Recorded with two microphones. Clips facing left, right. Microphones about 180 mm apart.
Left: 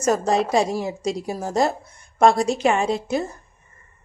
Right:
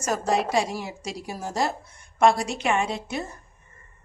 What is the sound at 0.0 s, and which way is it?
A woman's voice, 35° left (ahead or behind).